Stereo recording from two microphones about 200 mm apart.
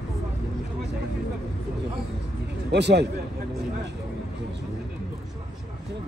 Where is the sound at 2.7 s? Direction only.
55° right (ahead or behind).